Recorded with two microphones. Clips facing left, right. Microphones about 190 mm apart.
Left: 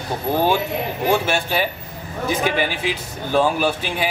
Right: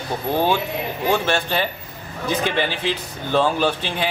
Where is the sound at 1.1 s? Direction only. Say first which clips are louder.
Even; 10° left (ahead or behind).